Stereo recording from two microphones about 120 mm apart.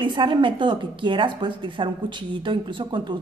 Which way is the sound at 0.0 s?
40° right (ahead or behind).